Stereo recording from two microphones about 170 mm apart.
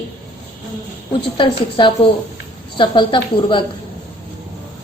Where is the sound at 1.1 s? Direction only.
30° left (ahead or behind).